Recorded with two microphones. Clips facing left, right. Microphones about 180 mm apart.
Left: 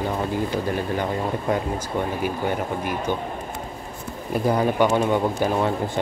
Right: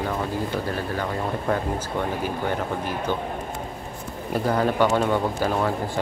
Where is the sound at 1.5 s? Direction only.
15° left (ahead or behind).